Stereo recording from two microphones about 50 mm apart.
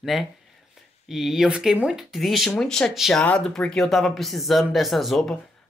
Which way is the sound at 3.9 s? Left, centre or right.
Centre.